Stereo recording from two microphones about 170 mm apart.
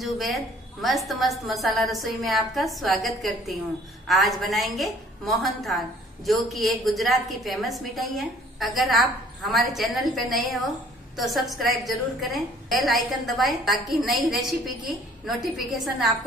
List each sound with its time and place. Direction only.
0.0 s a woman's voice: centre (ahead or behind)